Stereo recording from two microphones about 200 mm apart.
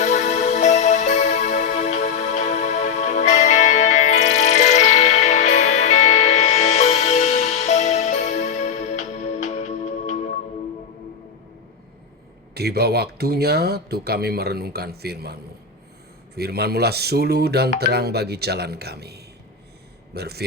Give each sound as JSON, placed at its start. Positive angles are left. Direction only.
{"t": 0.0, "sound": "music", "side_deg": 35}
{"t": 12.5, "sound": "speech", "side_deg": -55}